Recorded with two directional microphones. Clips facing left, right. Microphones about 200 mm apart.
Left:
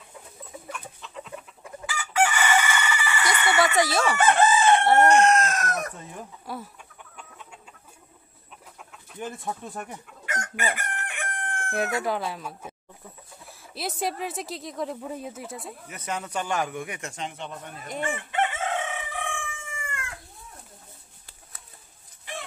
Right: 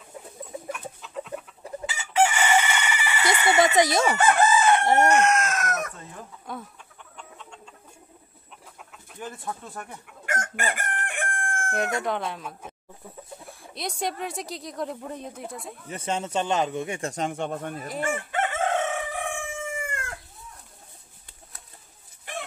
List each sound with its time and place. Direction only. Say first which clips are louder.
1.0 s chicken: right 1 dB; 5° right (ahead or behind)
1.9 s chicken: right 2 dB; 20° right (ahead or behind)
4.3 s chicken: left 2 dB; 25° left (ahead or behind)
5.1 s speech: left 2 dB; 35° left (ahead or behind)
5.9 s speech: left 2 dB; 10° left (ahead or behind)
7.2 s chicken: right 2 dB; 5° left (ahead or behind)
9.2 s speech: left 2 dB; 20° left (ahead or behind)
10.2 s chicken: right 1 dB; 50° right (ahead or behind)
11.7 s speech: left 1 dB; 5° left (ahead or behind)
15.9 s speech: right 4 dB; 25° right (ahead or behind)
17.1 s speech: right 7 dB; 45° right (ahead or behind)
18.1 s crowing: even; 45° right (ahead or behind)
19.9 s chicken: right 3 dB; 45° right (ahead or behind)